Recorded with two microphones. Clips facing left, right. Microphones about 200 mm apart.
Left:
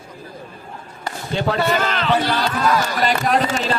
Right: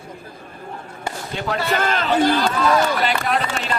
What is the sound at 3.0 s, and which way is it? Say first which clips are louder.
Speech: left 3 dB; 40° left (ahead or behind).